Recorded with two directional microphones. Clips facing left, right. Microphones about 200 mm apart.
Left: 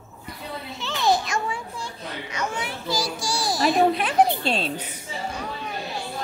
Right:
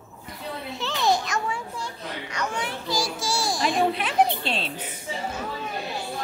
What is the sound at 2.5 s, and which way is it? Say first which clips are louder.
Children playing: even; 5° left (ahead or behind).